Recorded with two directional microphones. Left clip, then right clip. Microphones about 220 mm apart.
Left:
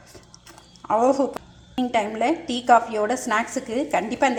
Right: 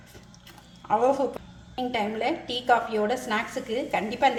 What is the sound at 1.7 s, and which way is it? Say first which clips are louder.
A woman's voice: left 5 dB; 25° left (ahead or behind).